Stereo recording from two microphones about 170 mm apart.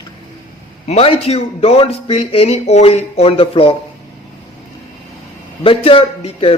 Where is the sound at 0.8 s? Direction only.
35° left (ahead or behind).